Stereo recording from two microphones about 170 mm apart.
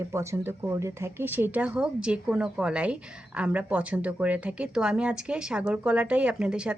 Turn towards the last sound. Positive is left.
turn(degrees=-5)  # may be behind; listen again after turning